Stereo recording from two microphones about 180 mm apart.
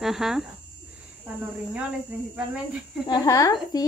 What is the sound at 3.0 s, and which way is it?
Speech, 20° left (ahead or behind).